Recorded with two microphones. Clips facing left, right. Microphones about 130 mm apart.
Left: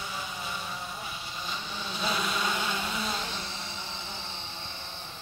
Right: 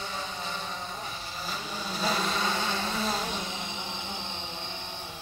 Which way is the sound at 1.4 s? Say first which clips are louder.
Right 2 dB; 40° right (ahead or behind).